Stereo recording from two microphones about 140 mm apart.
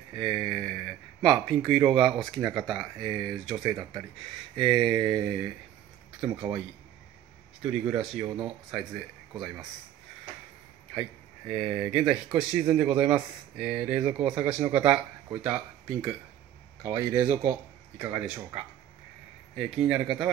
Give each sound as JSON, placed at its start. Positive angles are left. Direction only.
{"t": 0.1, "sound": "speech", "side_deg": 0}
{"t": 6.2, "sound": "speech", "side_deg": -5}
{"t": 7.6, "sound": "speech", "side_deg": -5}
{"t": 11.0, "sound": "speech", "side_deg": -5}
{"t": 17.1, "sound": "speech", "side_deg": -30}
{"t": 17.4, "sound": "speech", "side_deg": -15}